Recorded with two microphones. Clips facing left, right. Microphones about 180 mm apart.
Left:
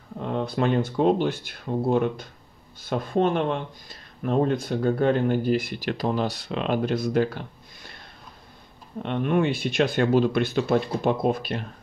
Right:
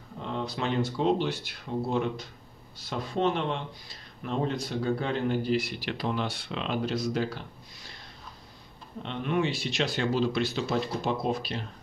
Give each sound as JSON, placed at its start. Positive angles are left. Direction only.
{"t": 0.3, "sound": "speech", "side_deg": 50}
{"t": 9.0, "sound": "speech", "side_deg": 55}